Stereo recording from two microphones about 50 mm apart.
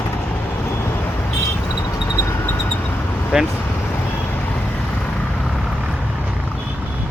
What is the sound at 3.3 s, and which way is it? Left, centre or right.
Speech, centre.